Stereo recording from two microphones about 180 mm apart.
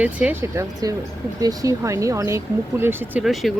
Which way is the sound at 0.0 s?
10° right (ahead or behind).